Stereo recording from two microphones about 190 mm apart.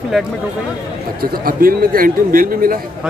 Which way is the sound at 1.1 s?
50° right (ahead or behind).